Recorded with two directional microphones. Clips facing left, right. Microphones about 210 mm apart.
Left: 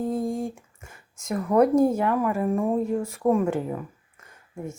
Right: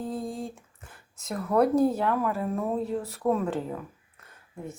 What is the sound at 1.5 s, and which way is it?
Speech, 20° left (ahead or behind).